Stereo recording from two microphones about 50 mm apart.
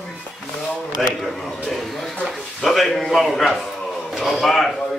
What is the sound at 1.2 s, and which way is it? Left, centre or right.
Speech, centre.